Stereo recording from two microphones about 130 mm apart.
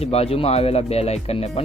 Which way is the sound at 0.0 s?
50° left (ahead or behind).